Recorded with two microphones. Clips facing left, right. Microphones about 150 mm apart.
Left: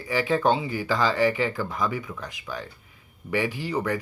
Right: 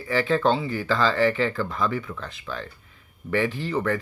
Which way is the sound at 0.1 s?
15° left (ahead or behind).